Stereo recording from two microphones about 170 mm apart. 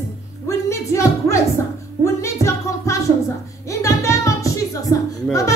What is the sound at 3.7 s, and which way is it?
Music, 15° left (ahead or behind).